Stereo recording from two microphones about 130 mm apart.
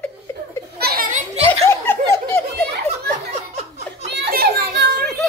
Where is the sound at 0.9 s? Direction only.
90° right.